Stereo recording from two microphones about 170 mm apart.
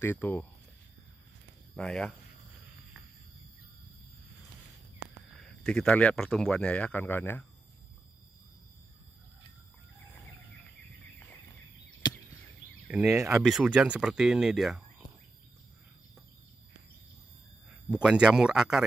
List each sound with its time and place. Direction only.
0.0 s speech: 10° left (ahead or behind)
1.8 s speech: 5° left (ahead or behind)
5.3 s speech: 5° left (ahead or behind)
12.0 s chop: 25° left (ahead or behind)
12.8 s a sound: 5° right (ahead or behind)
13.1 s speech: 20° right (ahead or behind)
13.4 s speech: 5° right (ahead or behind)
18.0 s speech: 5° right (ahead or behind)